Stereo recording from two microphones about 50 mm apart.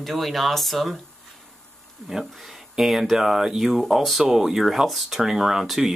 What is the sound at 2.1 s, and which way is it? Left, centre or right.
Speech, centre.